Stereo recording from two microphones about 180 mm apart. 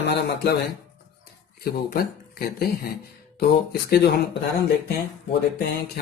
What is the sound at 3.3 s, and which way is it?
Speech, 65° left (ahead or behind).